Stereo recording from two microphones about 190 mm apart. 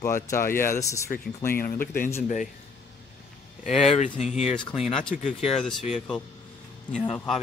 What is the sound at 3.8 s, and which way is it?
Speech, 30° left (ahead or behind).